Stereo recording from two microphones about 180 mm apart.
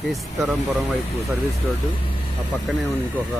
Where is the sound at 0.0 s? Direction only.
Centre (ahead or behind).